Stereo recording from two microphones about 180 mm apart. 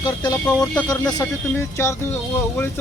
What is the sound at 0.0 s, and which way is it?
Speech, 20° left (ahead or behind).